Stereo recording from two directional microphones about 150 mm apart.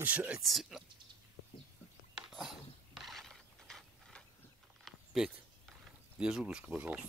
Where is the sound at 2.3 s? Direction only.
Centre (ahead or behind).